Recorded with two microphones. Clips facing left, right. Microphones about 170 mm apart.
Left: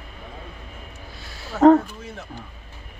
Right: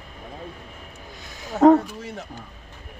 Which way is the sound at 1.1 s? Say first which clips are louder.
Right 2 dB; 15° right (ahead or behind).